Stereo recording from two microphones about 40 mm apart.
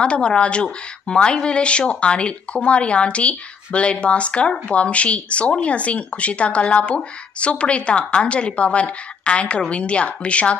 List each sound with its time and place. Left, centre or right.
0.0 s speech: left